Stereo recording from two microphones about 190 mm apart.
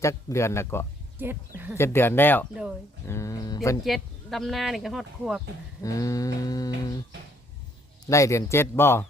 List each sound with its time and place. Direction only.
0.0 s speech: 15° left (ahead or behind)
1.2 s speech: 10° right (ahead or behind)
1.8 s speech: 10° left (ahead or behind)
3.8 s speech: centre (ahead or behind)
5.8 s livestock: 15° left (ahead or behind)
8.1 s speech: 15° left (ahead or behind)